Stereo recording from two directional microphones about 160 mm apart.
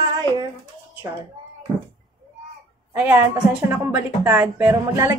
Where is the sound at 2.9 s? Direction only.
10° right (ahead or behind).